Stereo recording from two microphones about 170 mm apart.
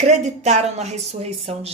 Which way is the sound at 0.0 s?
40° right (ahead or behind).